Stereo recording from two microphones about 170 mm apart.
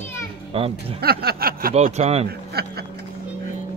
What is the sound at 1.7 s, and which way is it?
Speech, 40° right (ahead or behind).